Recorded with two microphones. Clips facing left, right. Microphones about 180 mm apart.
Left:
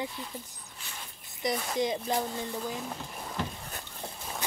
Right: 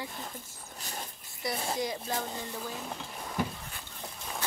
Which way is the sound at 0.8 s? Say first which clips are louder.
Right 5 dB; 40° right (ahead or behind).